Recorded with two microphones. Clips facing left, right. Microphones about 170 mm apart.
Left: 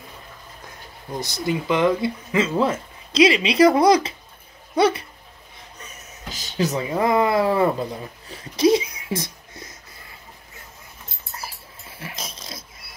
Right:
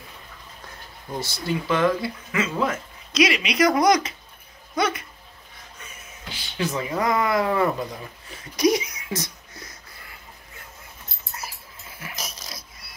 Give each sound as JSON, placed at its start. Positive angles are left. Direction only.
{"t": 1.2, "sound": "speech", "side_deg": 15}
{"t": 5.8, "sound": "music", "side_deg": 40}
{"t": 6.8, "sound": "speech", "side_deg": 25}
{"t": 8.3, "sound": "a sound", "side_deg": 25}
{"t": 12.0, "sound": "dog", "side_deg": 25}